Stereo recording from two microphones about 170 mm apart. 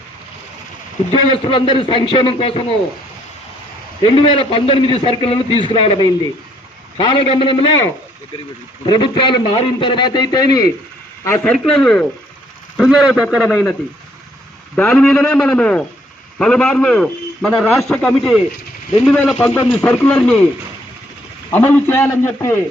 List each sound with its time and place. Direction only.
1.1 s a man's voice: 30° left (ahead or behind)
4.0 s a man's voice: 30° left (ahead or behind)
8.9 s a man's voice: 30° left (ahead or behind)
11.5 s a man's voice: 5° left (ahead or behind)
13.5 s speech: 10° left (ahead or behind)
14.8 s a man's voice: 10° left (ahead or behind)
21.5 s speech: 10° left (ahead or behind)